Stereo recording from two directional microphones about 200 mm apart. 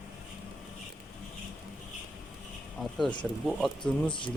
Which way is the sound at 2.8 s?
Centre (ahead or behind).